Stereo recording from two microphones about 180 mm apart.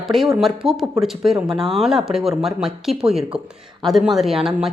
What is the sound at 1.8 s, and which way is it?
Speech, centre (ahead or behind).